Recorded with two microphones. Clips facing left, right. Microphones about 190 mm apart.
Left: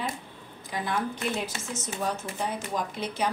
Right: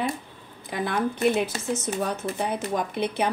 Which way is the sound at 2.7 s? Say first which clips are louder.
Right 5 dB; 60° right (ahead or behind).